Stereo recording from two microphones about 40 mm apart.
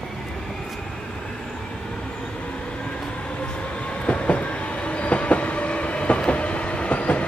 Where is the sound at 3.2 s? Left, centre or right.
Left.